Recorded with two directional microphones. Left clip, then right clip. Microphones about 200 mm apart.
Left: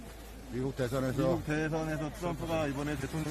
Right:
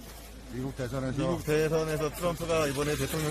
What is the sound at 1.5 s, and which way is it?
Speech, 45° right (ahead or behind).